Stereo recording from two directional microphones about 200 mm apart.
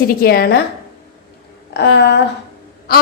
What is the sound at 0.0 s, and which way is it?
Speech, 50° left (ahead or behind).